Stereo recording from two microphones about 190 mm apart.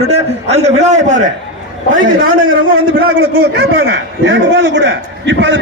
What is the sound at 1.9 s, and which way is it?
Speech, 90° right.